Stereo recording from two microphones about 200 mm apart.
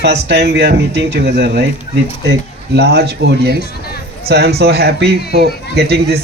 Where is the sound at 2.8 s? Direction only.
55° right (ahead or behind).